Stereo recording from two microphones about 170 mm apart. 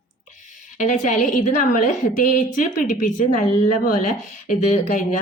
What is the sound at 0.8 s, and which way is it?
Speech, 50° left (ahead or behind).